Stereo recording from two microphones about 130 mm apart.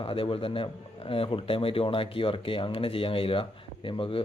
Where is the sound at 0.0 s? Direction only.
45° left (ahead or behind).